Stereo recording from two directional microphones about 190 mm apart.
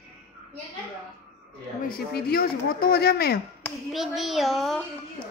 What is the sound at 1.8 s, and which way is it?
Speech, 55° left (ahead or behind).